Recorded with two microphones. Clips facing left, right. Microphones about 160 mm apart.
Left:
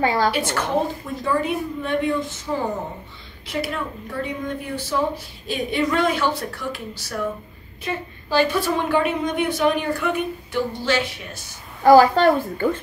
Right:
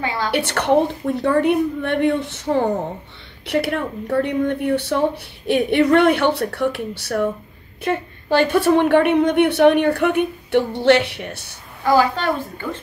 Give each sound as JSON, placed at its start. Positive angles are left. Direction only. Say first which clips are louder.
{"t": 0.0, "sound": "a woman's voice", "louder": "left 4 dB", "side_deg": 40}
{"t": 0.3, "sound": "a woman's voice", "louder": "right 5 dB", "side_deg": -70}
{"t": 11.8, "sound": "a woman's voice", "louder": "left 5 dB", "side_deg": 45}